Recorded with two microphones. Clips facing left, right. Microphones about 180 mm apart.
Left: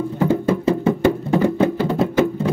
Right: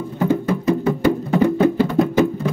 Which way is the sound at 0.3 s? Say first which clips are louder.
Even; 30° left (ahead or behind).